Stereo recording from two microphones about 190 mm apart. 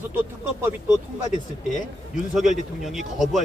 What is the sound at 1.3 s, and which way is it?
Speech, 40° left (ahead or behind).